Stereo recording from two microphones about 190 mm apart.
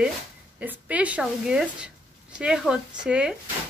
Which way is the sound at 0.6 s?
5° right (ahead or behind).